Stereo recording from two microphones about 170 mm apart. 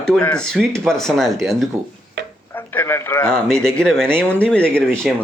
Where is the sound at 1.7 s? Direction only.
15° right (ahead or behind).